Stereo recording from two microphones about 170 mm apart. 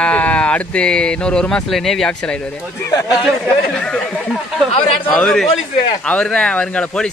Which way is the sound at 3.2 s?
5° left (ahead or behind).